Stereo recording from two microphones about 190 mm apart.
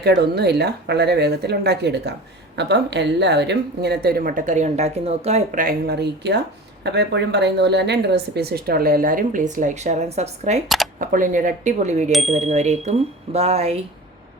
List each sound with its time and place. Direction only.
0.2 s a woman's voice: 60° right (ahead or behind); by 5.6 s 35° right (ahead or behind)
5.6 s a woman's voice: 55° right (ahead or behind); by 13.7 s 35° right (ahead or behind)